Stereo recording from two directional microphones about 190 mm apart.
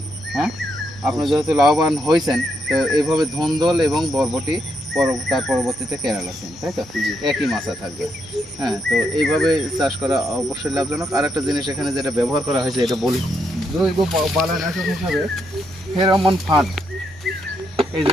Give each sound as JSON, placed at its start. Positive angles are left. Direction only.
{"t": 1.0, "sound": "speech", "side_deg": 0}
{"t": 16.0, "sound": "speech", "side_deg": -25}